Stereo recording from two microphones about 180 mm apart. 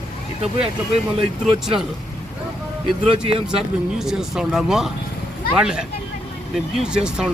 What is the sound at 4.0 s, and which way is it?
Speech, 5° right (ahead or behind).